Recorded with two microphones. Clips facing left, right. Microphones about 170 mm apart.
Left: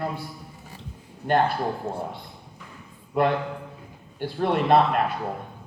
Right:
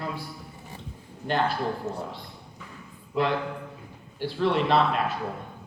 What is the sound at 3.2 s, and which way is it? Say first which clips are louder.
Speech: left 3 dB; 55° left (ahead or behind).